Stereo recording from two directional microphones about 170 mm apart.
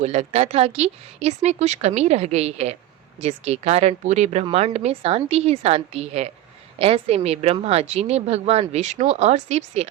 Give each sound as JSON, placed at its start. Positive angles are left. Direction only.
{"t": 0.0, "sound": "speech", "side_deg": -40}